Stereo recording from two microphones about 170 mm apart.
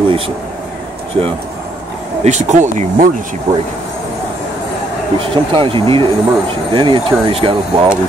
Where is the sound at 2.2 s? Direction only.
45° right (ahead or behind).